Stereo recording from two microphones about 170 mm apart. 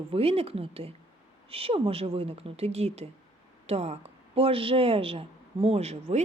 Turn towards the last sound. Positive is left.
turn(degrees=-40)  # may be behind; listen again after turning